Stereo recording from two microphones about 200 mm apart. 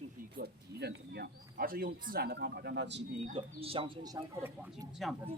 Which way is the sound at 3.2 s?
30° right (ahead or behind).